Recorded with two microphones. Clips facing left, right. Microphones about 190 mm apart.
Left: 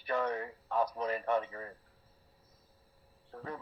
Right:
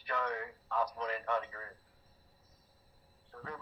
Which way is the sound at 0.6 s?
45° left (ahead or behind).